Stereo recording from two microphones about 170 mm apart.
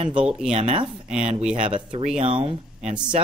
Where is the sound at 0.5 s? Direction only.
35° right (ahead or behind).